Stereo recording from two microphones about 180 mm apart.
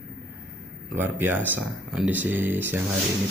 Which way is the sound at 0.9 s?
10° right (ahead or behind).